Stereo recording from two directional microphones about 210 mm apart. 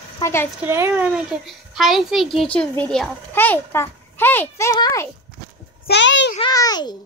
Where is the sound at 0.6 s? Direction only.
10° right (ahead or behind); by 5.0 s 15° left (ahead or behind).